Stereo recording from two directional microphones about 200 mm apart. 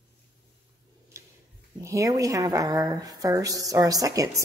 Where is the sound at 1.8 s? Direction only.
15° right (ahead or behind).